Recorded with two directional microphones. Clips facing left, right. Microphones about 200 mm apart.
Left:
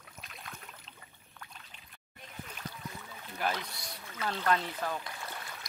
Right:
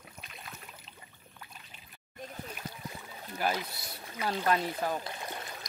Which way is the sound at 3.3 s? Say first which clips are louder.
Right 2 dB; 5° right (ahead or behind).